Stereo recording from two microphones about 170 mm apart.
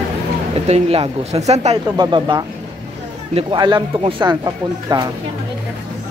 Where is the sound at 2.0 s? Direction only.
25° right (ahead or behind).